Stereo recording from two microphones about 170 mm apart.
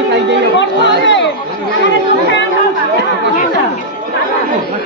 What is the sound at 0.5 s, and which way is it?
Speech, 90° left.